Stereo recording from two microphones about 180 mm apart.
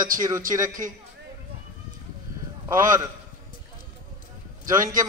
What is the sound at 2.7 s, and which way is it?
Speech, 20° right (ahead or behind).